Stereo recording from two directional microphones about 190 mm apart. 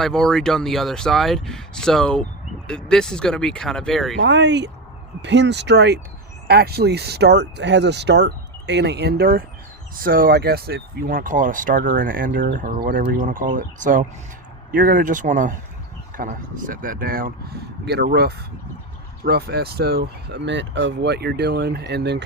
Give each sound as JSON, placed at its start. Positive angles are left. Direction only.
{"t": 0.0, "sound": "speech", "side_deg": 5}
{"t": 4.2, "sound": "speech", "side_deg": -70}